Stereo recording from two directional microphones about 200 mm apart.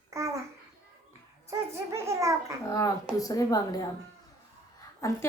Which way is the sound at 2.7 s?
15° left (ahead or behind).